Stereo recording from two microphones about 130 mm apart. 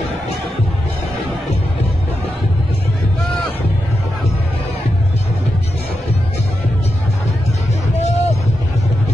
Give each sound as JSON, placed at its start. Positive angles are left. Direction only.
{"t": 8.0, "sound": "music", "side_deg": 55}